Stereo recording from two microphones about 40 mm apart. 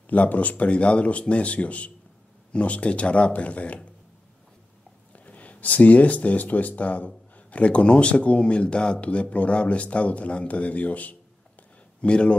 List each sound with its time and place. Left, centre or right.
0.0 s speech: left
5.1 s speech: left
12.0 s speech: left